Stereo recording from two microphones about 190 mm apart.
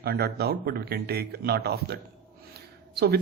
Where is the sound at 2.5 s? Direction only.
55° right (ahead or behind).